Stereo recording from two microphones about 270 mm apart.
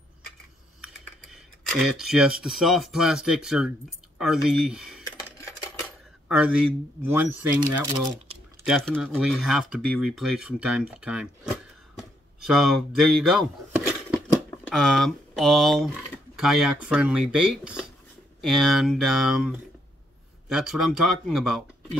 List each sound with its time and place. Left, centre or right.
0.7 s speech: centre
6.2 s speech: centre